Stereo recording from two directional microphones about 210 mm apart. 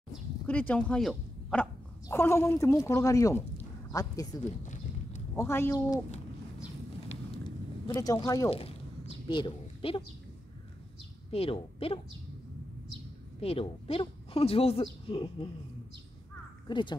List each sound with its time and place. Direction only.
0.5 s speech: 5° left (ahead or behind)
4.4 s a sound: 35° left (ahead or behind)
5.3 s speech: 10° left (ahead or behind)
7.1 s a sound: 25° left (ahead or behind)
8.5 s a woman's voice: 25° left (ahead or behind)
11.2 s speech: 25° left (ahead or behind)
13.4 s speech: 25° left (ahead or behind)
16.6 s speech: 20° left (ahead or behind)